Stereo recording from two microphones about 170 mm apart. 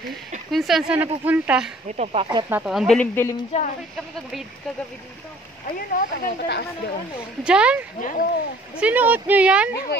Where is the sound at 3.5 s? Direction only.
40° left (ahead or behind).